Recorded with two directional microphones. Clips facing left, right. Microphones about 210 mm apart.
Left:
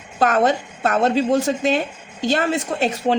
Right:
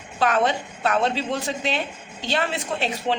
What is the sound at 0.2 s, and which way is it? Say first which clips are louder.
A woman's voice: left 4 dB; 45° left (ahead or behind).